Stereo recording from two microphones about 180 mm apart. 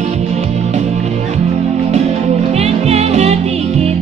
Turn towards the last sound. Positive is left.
turn(degrees=-35)  # may be behind; listen again after turning